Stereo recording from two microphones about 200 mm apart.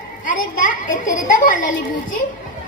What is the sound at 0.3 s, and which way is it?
A child's voice, 40° left (ahead or behind).